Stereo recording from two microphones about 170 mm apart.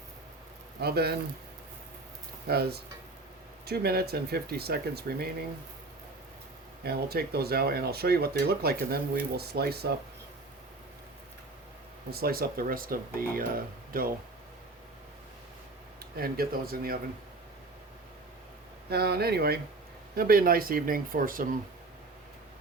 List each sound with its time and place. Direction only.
0.8 s speech: 70° right (ahead or behind)
2.5 s speech: 70° right (ahead or behind)
6.8 s speech: 65° right (ahead or behind)
12.1 s speech: 60° right (ahead or behind)
16.2 s speech: 60° right (ahead or behind)
18.9 s speech: 70° right (ahead or behind)